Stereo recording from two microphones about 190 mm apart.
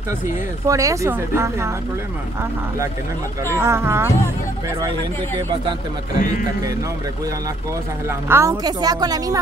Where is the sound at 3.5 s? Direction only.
15° right (ahead or behind).